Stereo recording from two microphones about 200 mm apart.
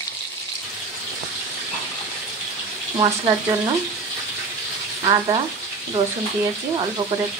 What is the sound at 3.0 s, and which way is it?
Speech, 20° right (ahead or behind).